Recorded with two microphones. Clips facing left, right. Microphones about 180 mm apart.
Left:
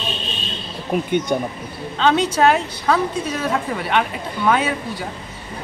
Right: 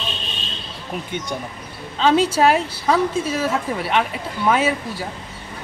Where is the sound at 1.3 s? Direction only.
55° left (ahead or behind).